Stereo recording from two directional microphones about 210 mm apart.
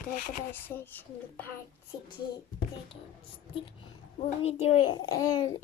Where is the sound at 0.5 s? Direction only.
10° left (ahead or behind).